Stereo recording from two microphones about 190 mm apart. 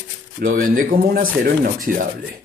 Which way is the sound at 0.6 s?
45° right (ahead or behind).